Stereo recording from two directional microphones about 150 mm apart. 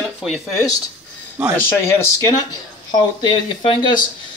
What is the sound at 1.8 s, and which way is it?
Speech, 15° left (ahead or behind).